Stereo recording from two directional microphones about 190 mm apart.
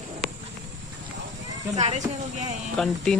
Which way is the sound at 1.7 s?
35° right (ahead or behind).